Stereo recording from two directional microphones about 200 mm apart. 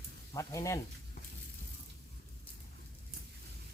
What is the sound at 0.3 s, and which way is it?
Speech, 15° left (ahead or behind).